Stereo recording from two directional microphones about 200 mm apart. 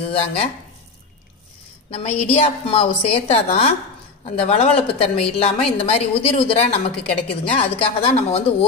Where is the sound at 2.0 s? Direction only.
35° left (ahead or behind).